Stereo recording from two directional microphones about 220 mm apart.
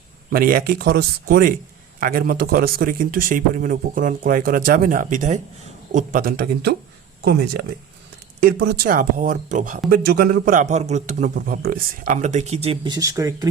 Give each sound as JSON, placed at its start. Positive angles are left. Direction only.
{"t": 0.3, "sound": "a man's voice", "side_deg": -40}
{"t": 8.4, "sound": "a man's voice", "side_deg": -45}